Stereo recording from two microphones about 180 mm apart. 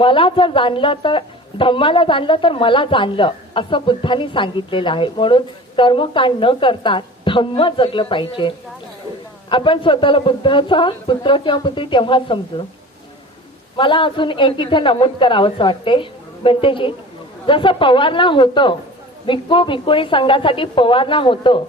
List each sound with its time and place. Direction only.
0.0 s speech: 30° left (ahead or behind)
13.7 s speech: 25° left (ahead or behind)